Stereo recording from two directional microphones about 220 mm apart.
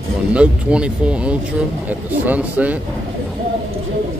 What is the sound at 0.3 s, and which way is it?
Speech, 5° right (ahead or behind).